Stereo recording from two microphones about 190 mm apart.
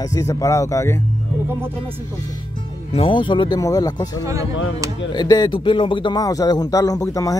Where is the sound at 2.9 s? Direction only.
25° left (ahead or behind).